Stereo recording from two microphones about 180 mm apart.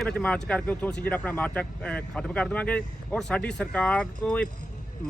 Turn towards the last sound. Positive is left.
turn(degrees=5)  # may be behind; listen again after turning